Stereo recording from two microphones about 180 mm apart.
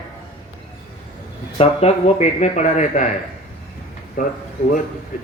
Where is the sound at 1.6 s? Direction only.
35° left (ahead or behind).